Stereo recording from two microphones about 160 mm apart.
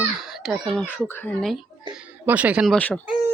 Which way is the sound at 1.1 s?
10° left (ahead or behind).